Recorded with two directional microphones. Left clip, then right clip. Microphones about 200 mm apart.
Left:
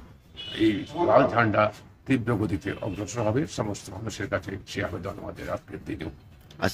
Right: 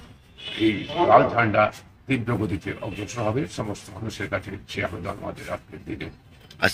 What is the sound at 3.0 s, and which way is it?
Speech, 20° left (ahead or behind).